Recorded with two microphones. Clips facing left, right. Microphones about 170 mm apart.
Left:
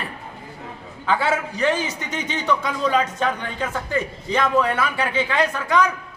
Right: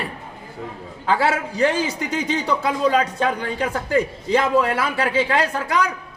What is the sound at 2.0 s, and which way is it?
Speech, 35° right (ahead or behind).